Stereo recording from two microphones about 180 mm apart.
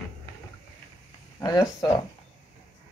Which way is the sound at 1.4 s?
20° left (ahead or behind).